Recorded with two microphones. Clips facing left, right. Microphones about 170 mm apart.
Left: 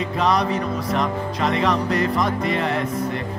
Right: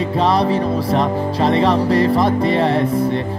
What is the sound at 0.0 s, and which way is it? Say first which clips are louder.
Music: right 4 dB; 30° right (ahead or behind).